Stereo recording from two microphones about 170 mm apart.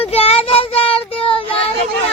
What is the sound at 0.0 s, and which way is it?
Child singing, 35° left (ahead or behind).